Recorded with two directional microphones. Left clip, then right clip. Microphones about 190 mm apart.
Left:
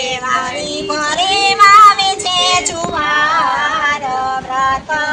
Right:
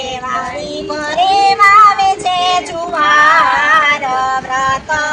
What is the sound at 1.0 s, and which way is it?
Child singing, centre (ahead or behind).